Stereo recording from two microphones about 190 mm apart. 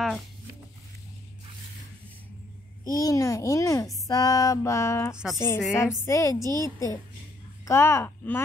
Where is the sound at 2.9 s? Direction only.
20° left (ahead or behind).